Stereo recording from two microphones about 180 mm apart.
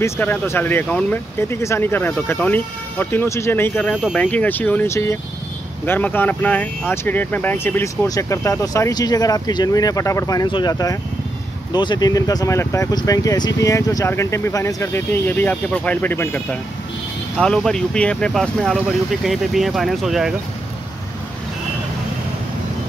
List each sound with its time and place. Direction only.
0.0 s speech: 10° left (ahead or behind)